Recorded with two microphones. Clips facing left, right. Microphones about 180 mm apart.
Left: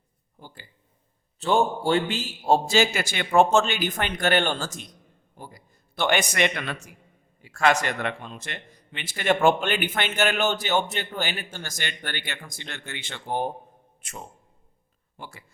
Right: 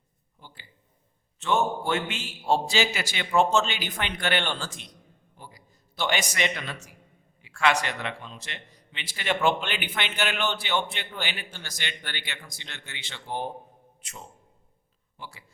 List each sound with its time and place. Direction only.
0.3 s a sound: 45° left (ahead or behind)
1.4 s a man's voice: 35° left (ahead or behind); by 6.9 s 60° left (ahead or behind)
7.4 s speech: 45° left (ahead or behind)